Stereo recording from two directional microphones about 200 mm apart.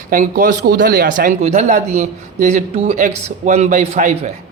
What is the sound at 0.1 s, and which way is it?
Speech, 40° right (ahead or behind).